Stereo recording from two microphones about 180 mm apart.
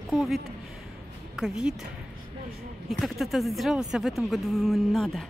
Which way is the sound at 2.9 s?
Centre (ahead or behind).